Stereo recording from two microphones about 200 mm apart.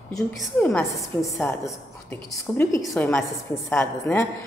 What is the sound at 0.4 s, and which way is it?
A woman's voice, 5° left (ahead or behind).